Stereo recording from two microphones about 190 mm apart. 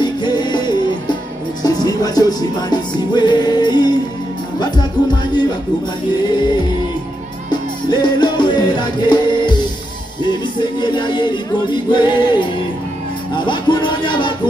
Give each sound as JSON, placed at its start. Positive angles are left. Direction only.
{"t": 0.0, "sound": "music", "side_deg": 25}
{"t": 6.3, "sound": "music", "side_deg": 25}
{"t": 7.9, "sound": "music", "side_deg": 25}
{"t": 10.6, "sound": "music", "side_deg": 25}
{"t": 13.4, "sound": "speech", "side_deg": 25}